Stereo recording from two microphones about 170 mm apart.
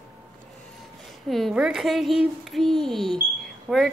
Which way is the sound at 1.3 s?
5° right (ahead or behind).